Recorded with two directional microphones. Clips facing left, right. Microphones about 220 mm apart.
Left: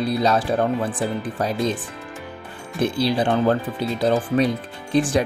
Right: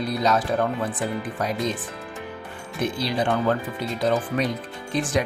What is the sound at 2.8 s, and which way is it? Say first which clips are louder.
Speech: left 4 dB; 30° left (ahead or behind).